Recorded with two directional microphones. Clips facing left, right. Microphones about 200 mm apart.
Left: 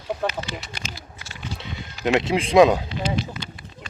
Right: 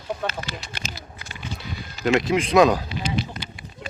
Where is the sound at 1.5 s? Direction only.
25° left (ahead or behind).